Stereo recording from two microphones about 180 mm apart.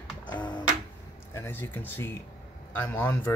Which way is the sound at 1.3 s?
10° left (ahead or behind).